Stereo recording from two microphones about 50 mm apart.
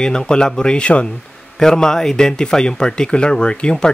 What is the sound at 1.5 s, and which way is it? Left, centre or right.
Speech, centre.